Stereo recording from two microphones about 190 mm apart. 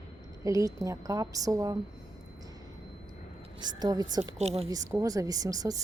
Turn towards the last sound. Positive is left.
turn(degrees=-20)  # may be behind; listen again after turning